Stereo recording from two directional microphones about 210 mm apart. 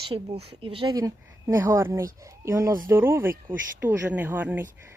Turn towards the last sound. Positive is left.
turn(degrees=-10)  # may be behind; listen again after turning